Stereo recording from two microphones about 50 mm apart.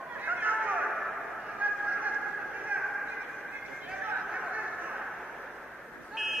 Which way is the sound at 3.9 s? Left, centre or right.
Right.